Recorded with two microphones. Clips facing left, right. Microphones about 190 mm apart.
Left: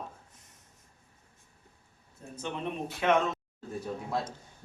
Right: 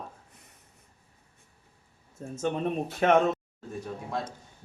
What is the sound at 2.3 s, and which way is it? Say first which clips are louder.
Speech: right 7 dB; 45° right (ahead or behind).